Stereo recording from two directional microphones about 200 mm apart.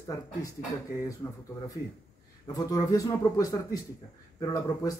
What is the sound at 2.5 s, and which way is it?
Speech, 20° left (ahead or behind).